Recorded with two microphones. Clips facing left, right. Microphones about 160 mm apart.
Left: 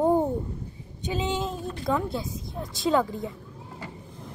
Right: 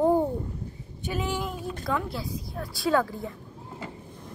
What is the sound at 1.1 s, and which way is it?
Speech, 20° left (ahead or behind).